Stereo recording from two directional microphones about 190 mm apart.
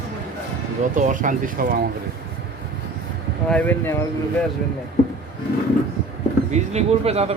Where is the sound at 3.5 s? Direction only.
10° left (ahead or behind).